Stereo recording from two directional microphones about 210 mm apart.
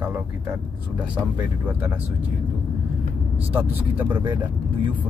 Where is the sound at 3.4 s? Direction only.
10° right (ahead or behind).